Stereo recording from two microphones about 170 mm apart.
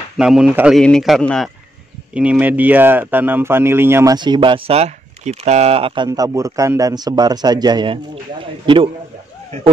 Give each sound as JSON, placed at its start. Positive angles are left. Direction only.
{"t": 0.2, "sound": "speech", "side_deg": -5}
{"t": 6.0, "sound": "a man's voice", "side_deg": -20}